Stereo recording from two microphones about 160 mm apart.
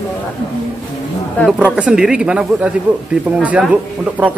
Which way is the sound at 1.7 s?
5° right (ahead or behind).